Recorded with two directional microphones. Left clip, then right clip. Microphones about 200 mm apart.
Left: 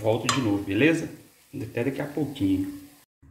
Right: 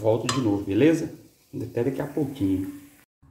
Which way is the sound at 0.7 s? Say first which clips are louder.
Right 2 dB; 15° right (ahead or behind).